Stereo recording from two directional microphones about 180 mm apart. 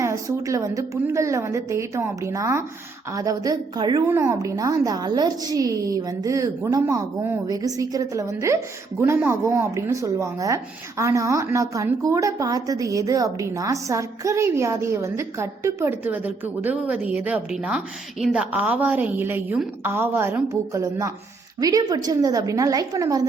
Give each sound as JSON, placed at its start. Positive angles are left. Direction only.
{"t": 0.0, "sound": "a woman's voice", "side_deg": -15}